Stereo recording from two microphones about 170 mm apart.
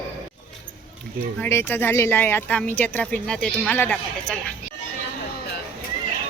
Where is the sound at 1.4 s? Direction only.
15° left (ahead or behind).